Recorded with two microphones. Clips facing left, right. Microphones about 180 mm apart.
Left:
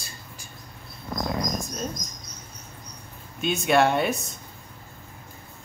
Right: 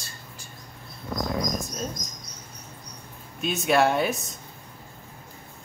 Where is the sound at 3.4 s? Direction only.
Centre (ahead or behind).